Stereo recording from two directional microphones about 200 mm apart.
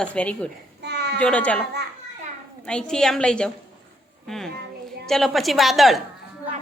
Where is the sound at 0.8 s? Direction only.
55° right (ahead or behind).